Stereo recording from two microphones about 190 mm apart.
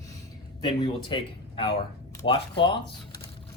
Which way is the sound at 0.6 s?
25° left (ahead or behind).